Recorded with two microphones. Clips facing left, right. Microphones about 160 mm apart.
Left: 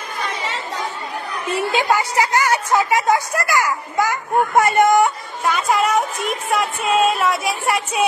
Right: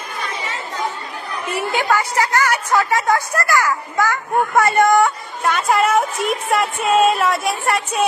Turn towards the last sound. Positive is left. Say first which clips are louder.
# right 1 dB
turn(degrees=0)  # may be behind; listen again after turning